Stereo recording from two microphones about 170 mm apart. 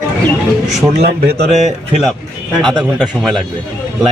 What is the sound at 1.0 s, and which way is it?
Speech, 35° right (ahead or behind).